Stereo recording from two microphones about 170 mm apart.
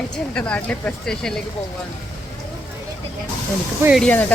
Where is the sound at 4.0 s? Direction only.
10° left (ahead or behind).